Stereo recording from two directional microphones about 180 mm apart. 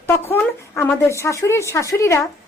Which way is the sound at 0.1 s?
10° left (ahead or behind).